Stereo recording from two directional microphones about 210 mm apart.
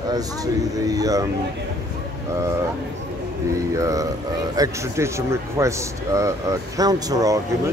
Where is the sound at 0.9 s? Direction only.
15° right (ahead or behind).